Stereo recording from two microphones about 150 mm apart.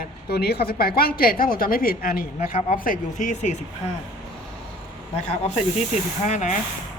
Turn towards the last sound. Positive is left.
turn(degrees=50)  # may be behind; listen again after turning